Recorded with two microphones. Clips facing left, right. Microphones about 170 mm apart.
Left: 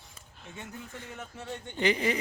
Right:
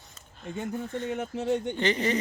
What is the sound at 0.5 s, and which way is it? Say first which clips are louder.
Speech: right 11 dB; 85° right.